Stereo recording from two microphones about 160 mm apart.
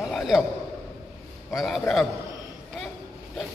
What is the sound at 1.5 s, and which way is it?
Speech, centre (ahead or behind).